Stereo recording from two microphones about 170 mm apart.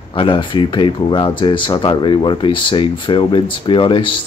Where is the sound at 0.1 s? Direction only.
30° left (ahead or behind).